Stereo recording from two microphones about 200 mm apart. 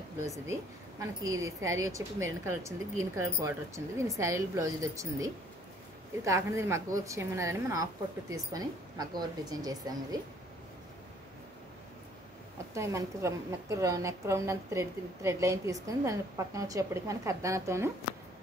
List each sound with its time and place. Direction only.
0.5 s a woman's voice: 15° right (ahead or behind)
12.7 s a woman's voice: 15° right (ahead or behind)